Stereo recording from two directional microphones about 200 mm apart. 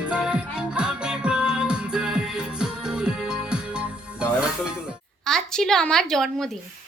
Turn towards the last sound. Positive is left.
turn(degrees=0)  # may be behind; listen again after turning